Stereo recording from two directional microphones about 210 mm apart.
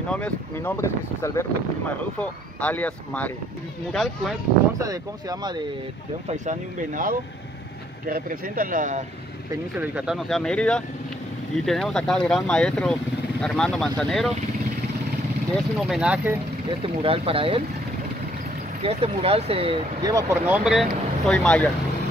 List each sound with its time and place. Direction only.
0.1 s speech: 5° left (ahead or behind)
4.7 s speech: 15° right (ahead or behind)
6.2 s speech: 35° right (ahead or behind)
9.5 s speech: 5° right (ahead or behind)
15.5 s speech: 5° right (ahead or behind)
16.8 s speech: 25° right (ahead or behind)
18.8 s speech: 30° right (ahead or behind); by 20.8 s 5° right (ahead or behind)
21.3 s speech: 5° left (ahead or behind)